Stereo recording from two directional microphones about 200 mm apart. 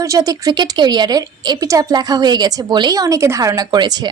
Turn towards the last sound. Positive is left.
turn(degrees=-20)  # may be behind; listen again after turning